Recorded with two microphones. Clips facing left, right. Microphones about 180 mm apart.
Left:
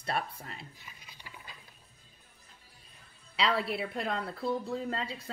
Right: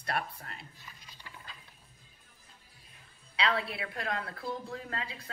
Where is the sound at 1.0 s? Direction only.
10° left (ahead or behind).